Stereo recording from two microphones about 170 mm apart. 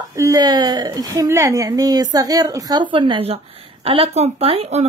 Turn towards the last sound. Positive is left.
turn(degrees=-40)  # may be behind; listen again after turning